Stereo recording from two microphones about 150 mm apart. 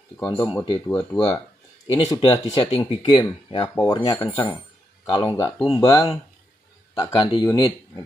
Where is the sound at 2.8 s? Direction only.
30° left (ahead or behind).